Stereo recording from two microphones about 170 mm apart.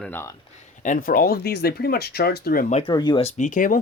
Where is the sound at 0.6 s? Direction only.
50° left (ahead or behind).